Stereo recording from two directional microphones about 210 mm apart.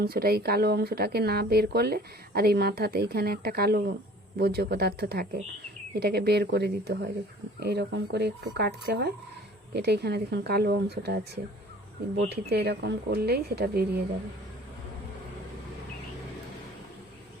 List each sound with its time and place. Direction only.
0.0 s speech: 45° right (ahead or behind)
12.3 s speech: 50° right (ahead or behind)